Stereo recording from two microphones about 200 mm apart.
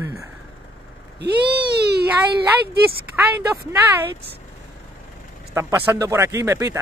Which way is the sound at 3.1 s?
10° right (ahead or behind).